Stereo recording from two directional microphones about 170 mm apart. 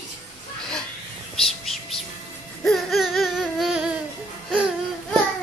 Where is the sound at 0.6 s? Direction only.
5° left (ahead or behind).